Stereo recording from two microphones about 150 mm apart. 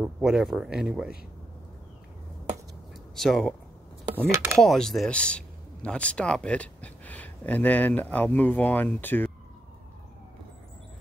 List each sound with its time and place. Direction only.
0.0 s speech: 5° right (ahead or behind)
3.2 s speech: centre (ahead or behind)
4.3 s speech: 20° right (ahead or behind)
4.6 s speech: centre (ahead or behind)